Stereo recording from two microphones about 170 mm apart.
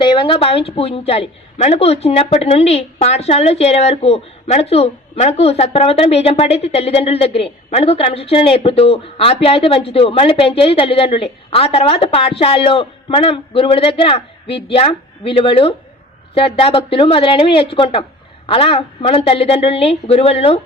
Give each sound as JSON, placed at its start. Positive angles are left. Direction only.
{"t": 0.0, "sound": "a woman's voice", "side_deg": 30}